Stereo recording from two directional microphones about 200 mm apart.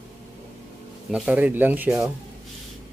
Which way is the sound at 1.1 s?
5° right (ahead or behind).